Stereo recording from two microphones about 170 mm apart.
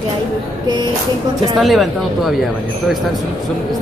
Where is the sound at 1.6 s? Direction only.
Centre (ahead or behind).